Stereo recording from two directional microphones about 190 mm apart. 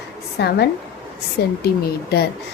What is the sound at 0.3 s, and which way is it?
A woman's voice, 60° left (ahead or behind).